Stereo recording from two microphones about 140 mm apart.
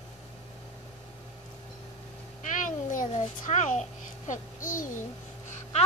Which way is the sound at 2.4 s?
65° left (ahead or behind).